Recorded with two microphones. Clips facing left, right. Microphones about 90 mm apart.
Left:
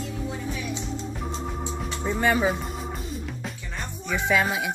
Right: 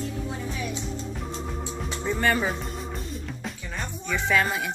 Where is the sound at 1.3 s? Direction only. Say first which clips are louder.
Left 2 dB; 20° left (ahead or behind).